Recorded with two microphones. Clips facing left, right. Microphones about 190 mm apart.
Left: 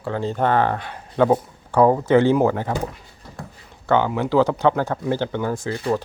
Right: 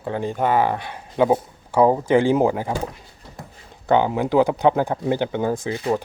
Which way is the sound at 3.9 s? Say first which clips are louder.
Right 1 dB; 15° right (ahead or behind).